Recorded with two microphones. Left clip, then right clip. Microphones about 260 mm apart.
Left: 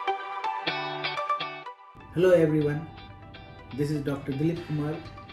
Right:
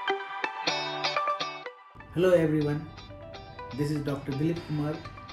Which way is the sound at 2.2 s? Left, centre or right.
Centre.